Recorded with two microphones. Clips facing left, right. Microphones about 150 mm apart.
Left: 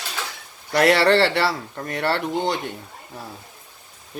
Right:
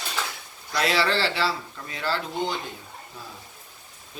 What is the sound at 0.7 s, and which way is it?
Speech, 65° left (ahead or behind).